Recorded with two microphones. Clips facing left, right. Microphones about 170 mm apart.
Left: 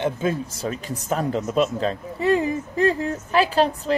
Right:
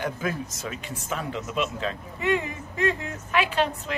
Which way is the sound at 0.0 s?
25° left (ahead or behind).